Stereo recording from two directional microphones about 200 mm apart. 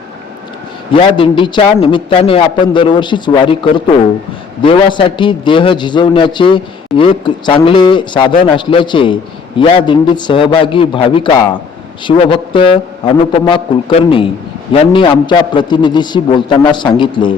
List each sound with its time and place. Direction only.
0.9 s a man's voice: 25° left (ahead or behind)